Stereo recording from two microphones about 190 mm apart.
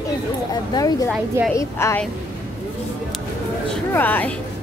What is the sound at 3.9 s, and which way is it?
Speech, 10° left (ahead or behind).